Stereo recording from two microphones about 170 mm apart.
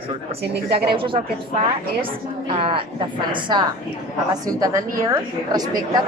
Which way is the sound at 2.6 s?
35° right (ahead or behind).